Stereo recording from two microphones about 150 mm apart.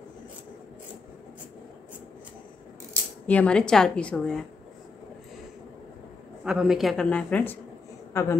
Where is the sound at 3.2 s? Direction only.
10° left (ahead or behind).